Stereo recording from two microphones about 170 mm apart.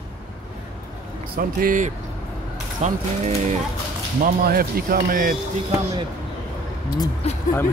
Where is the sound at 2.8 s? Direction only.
40° right (ahead or behind).